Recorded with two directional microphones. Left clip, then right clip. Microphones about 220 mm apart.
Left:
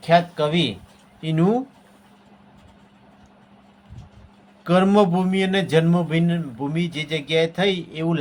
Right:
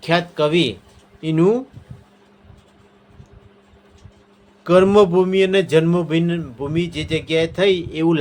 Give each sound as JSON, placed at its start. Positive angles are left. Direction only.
{"t": 0.0, "sound": "a man's voice", "side_deg": -25}
{"t": 4.6, "sound": "a man's voice", "side_deg": -20}